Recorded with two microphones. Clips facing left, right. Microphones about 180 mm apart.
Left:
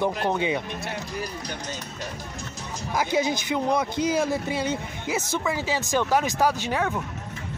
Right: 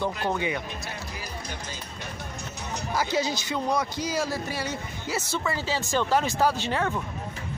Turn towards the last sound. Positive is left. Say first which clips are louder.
# left 1 dB
turn(degrees=10)  # may be behind; listen again after turning